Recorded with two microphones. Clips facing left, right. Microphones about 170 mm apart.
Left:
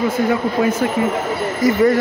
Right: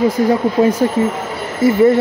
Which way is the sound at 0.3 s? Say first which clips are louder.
Right 4 dB; 30° right (ahead or behind).